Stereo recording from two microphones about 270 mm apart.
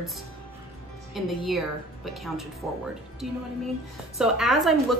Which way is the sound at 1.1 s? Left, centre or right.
Centre.